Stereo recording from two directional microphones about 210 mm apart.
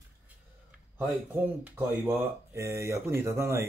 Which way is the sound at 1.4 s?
10° right (ahead or behind).